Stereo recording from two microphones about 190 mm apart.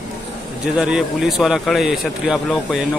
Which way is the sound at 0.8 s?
5° right (ahead or behind).